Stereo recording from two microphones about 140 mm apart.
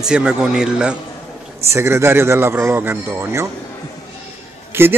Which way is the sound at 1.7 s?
20° right (ahead or behind).